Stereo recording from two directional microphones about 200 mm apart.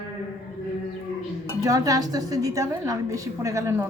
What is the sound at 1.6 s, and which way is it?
A woman's voice, 15° right (ahead or behind).